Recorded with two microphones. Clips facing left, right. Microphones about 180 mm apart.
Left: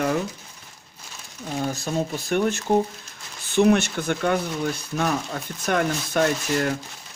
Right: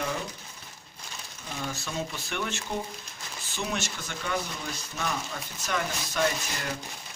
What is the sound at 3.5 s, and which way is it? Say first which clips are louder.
Speech: left 15 dB; 60° left (ahead or behind).